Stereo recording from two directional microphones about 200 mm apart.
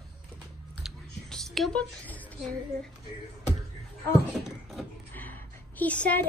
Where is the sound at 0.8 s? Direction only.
Centre (ahead or behind).